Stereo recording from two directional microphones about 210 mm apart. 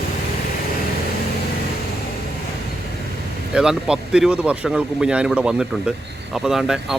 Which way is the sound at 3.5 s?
5° right (ahead or behind).